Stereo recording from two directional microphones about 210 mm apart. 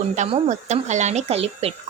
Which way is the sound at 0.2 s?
35° right (ahead or behind).